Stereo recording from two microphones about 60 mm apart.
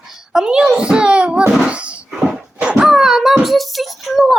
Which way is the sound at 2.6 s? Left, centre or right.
Centre.